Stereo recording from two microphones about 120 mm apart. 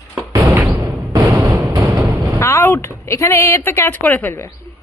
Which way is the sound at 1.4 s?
30° right (ahead or behind).